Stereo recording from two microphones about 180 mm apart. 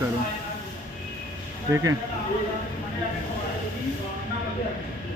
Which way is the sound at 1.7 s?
20° right (ahead or behind).